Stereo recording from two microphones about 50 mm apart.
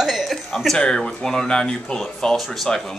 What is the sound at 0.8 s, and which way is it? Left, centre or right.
Speech, centre.